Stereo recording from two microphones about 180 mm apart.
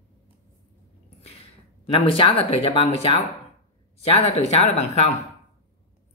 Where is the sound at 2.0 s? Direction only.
30° left (ahead or behind).